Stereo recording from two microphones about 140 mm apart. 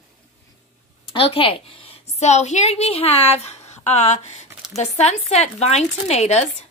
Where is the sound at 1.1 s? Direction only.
40° left (ahead or behind).